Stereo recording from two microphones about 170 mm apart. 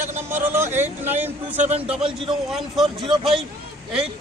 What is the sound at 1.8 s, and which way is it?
Speech, 5° right (ahead or behind).